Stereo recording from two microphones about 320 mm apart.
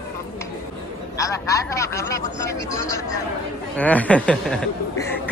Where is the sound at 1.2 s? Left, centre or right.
Centre.